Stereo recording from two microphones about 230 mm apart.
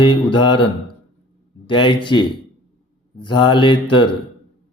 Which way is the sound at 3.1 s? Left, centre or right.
Centre.